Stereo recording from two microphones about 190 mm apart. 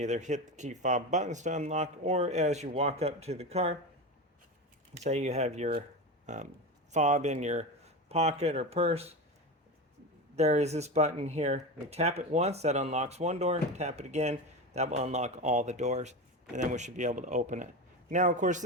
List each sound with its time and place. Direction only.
0.0 s speech: 40° right (ahead or behind)
4.9 s speech: 35° right (ahead or behind)
10.3 s speech: 35° right (ahead or behind)